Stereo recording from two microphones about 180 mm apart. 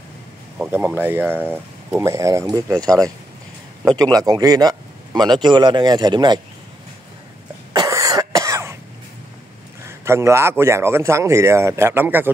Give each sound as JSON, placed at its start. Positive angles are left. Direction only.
{"t": 0.6, "sound": "speech", "side_deg": -10}
{"t": 7.7, "sound": "cough", "side_deg": -20}
{"t": 9.8, "sound": "speech", "side_deg": -15}